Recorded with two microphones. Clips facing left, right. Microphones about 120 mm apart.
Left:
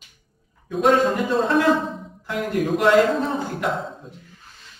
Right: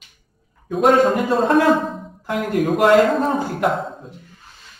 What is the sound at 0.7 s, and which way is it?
Speech, 45° right (ahead or behind).